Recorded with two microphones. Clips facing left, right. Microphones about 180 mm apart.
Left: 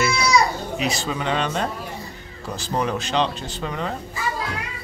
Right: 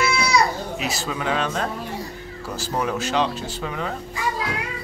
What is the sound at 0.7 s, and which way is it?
Speech, 5° right (ahead or behind).